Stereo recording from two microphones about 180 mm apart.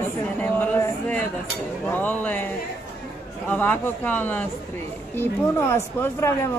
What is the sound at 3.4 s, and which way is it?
Speech, 10° left (ahead or behind).